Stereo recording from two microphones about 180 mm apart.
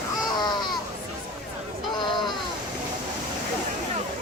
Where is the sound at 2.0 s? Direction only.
25° left (ahead or behind).